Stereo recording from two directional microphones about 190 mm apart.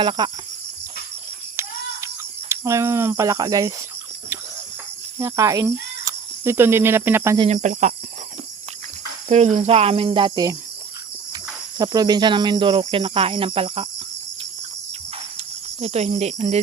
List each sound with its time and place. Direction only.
0.0 s cricket: 25° right (ahead or behind)
1.6 s a sound: 15° right (ahead or behind)
2.5 s speech: 15° right (ahead or behind)
5.2 s speech: 15° right (ahead or behind)
7.3 s speech: 35° right (ahead or behind)
9.3 s cricket: 35° right (ahead or behind); by 10.6 s 20° right (ahead or behind)
11.8 s cricket: 20° right (ahead or behind)
15.4 s speech: 35° right (ahead or behind)